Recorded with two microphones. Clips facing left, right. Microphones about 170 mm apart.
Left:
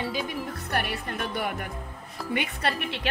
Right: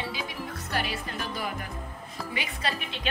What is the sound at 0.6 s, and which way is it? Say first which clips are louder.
Speech: left 1 dB; 60° left (ahead or behind).